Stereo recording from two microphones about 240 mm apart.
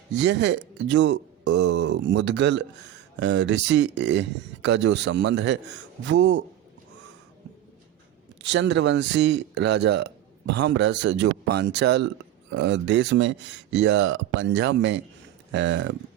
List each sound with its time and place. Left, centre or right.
0.1 s speech: right
8.4 s speech: right